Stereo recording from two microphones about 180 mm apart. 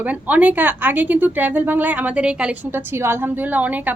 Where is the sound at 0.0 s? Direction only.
10° right (ahead or behind).